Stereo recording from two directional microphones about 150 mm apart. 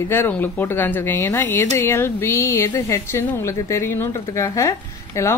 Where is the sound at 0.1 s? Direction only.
15° left (ahead or behind).